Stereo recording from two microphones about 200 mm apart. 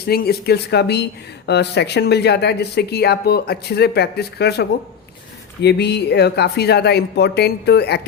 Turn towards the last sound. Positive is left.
turn(degrees=55)  # may be behind; listen again after turning